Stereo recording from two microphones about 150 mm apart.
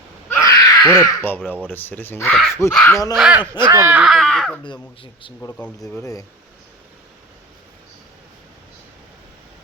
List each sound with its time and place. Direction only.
0.3 s a sound: 20° left (ahead or behind)
1.7 s speech: 15° left (ahead or behind)
3.1 s speech: 5° right (ahead or behind); by 6.2 s 20° left (ahead or behind)